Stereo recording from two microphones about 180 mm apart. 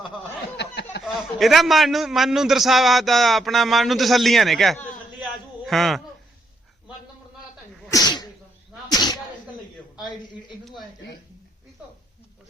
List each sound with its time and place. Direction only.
0.5 s a sound: 70° left (ahead or behind)
1.0 s a man's voice: centre (ahead or behind)
7.9 s sneeze: 20° left (ahead or behind)